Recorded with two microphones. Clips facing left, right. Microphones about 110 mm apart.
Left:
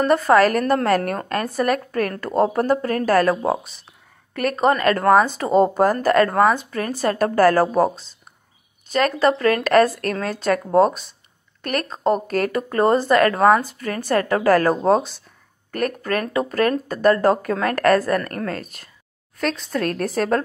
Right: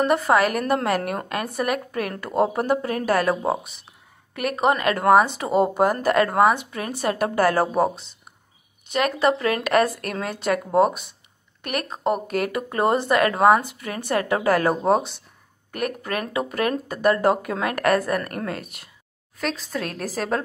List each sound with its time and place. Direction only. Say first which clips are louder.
0.0 s speech: left 4 dB; 15° right (ahead or behind)
19.3 s a woman's voice: left 4 dB; 5° right (ahead or behind)